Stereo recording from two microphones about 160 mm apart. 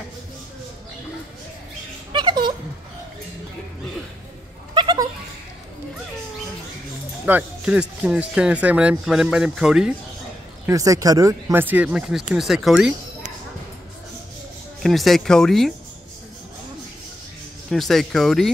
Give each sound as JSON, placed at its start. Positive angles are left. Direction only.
{"t": 2.1, "sound": "a sound", "side_deg": -30}
{"t": 4.7, "sound": "a sound", "side_deg": -25}
{"t": 7.2, "sound": "speech", "side_deg": -10}
{"t": 10.7, "sound": "speech", "side_deg": -20}
{"t": 14.8, "sound": "speech", "side_deg": 0}
{"t": 17.6, "sound": "speech", "side_deg": 0}